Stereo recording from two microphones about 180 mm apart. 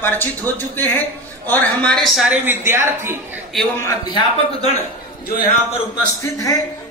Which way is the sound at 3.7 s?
15° left (ahead or behind).